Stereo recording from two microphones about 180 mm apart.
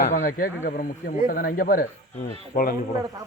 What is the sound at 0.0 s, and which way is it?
Speech, 50° left (ahead or behind).